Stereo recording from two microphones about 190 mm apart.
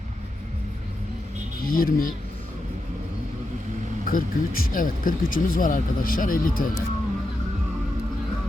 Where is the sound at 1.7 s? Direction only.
50° left (ahead or behind).